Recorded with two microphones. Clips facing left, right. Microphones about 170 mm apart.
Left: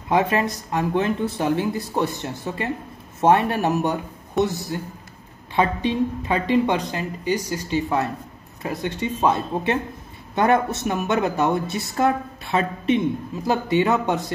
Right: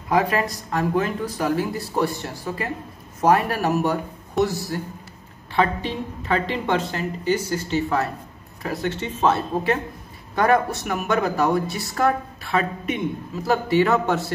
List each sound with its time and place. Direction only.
0.1 s speech: 25° left (ahead or behind)